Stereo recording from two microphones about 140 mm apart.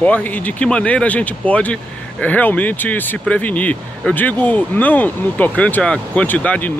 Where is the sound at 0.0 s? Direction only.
10° left (ahead or behind).